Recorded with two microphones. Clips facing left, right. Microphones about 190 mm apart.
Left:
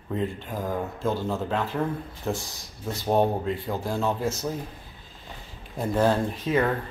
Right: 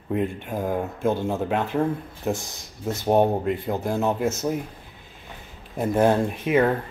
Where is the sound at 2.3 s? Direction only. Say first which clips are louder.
Right 4 dB; 10° right (ahead or behind).